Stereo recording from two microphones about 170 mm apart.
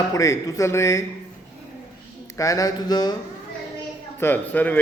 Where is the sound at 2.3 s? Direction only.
20° left (ahead or behind).